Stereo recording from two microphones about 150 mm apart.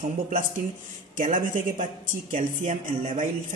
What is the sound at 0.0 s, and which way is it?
A woman's voice, 65° right (ahead or behind).